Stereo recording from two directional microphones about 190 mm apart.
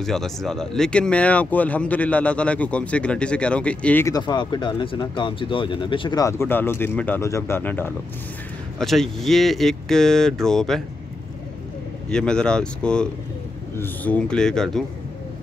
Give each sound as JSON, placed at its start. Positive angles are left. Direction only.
{"t": 0.0, "sound": "speech", "side_deg": 0}
{"t": 4.2, "sound": "speech", "side_deg": 25}
{"t": 12.1, "sound": "speech", "side_deg": 5}